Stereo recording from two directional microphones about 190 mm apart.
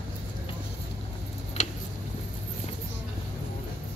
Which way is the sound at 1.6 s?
40° left (ahead or behind).